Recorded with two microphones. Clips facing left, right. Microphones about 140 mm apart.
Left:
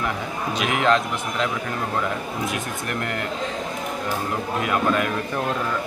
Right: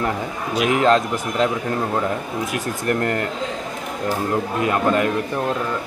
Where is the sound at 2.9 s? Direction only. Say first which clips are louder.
Right 9 dB; 45° right (ahead or behind).